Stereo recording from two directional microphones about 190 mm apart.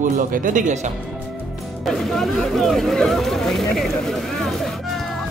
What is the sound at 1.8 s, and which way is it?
Speech, centre (ahead or behind).